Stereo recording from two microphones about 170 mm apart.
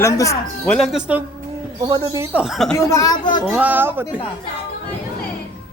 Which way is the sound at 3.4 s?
10° right (ahead or behind).